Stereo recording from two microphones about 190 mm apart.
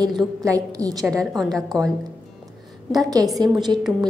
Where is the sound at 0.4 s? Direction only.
20° right (ahead or behind).